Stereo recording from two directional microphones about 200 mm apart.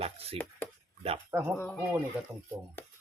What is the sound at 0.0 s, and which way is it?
Speech, 30° right (ahead or behind).